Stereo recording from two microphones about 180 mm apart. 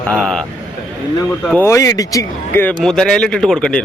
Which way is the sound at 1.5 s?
10° left (ahead or behind).